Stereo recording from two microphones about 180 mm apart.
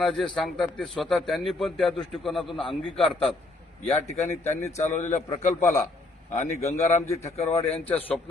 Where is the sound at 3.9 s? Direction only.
35° left (ahead or behind).